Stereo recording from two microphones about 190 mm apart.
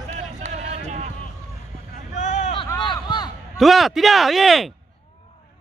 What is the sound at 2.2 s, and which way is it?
Vehicle, 35° left (ahead or behind).